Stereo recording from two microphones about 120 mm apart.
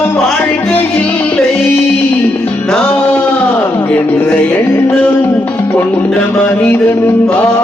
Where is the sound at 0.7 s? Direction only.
15° left (ahead or behind).